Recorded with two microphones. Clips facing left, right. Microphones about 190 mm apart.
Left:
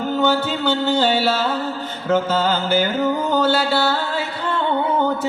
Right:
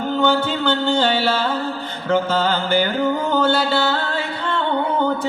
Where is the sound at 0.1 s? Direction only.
10° left (ahead or behind).